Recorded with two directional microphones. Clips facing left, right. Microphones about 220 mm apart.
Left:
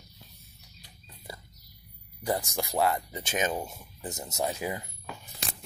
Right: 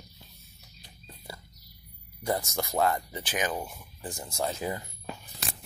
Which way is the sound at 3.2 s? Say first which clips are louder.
Left 2 dB; 25° left (ahead or behind).